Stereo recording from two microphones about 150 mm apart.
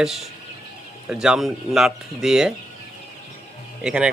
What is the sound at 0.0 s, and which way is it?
Speech, centre (ahead or behind).